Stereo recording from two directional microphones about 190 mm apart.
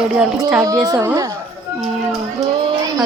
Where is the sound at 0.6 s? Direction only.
15° right (ahead or behind).